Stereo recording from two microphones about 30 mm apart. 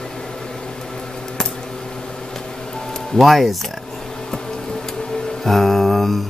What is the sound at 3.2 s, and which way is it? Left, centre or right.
Speech, centre.